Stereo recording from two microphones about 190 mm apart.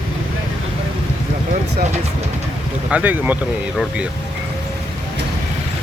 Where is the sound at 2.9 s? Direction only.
10° right (ahead or behind).